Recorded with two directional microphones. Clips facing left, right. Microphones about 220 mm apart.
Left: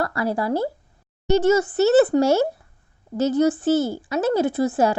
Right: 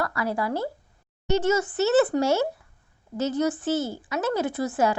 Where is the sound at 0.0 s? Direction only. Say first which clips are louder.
Left 4 dB; 30° left (ahead or behind).